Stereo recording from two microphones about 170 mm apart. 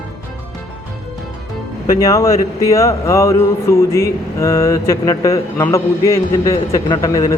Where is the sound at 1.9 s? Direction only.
20° left (ahead or behind).